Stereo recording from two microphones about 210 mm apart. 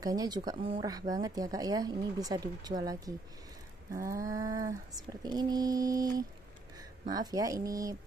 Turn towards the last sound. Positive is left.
turn(degrees=-15)  # may be behind; listen again after turning